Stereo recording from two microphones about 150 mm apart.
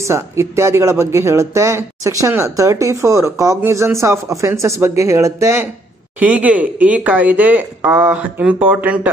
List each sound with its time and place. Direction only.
0.0 s speech: 20° right (ahead or behind)